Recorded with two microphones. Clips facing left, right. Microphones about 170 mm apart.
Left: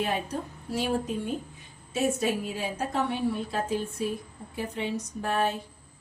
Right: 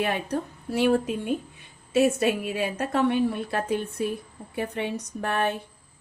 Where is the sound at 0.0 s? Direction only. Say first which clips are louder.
Right 3 dB; 65° right (ahead or behind).